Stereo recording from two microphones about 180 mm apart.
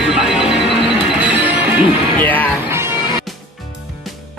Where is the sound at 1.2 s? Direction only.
10° right (ahead or behind).